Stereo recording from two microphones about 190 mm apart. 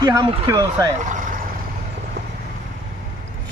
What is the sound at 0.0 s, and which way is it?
Speech, 20° right (ahead or behind).